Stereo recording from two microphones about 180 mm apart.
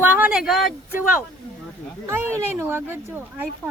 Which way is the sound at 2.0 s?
10° right (ahead or behind).